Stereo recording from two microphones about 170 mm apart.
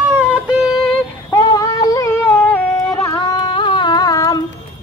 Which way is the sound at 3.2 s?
25° left (ahead or behind).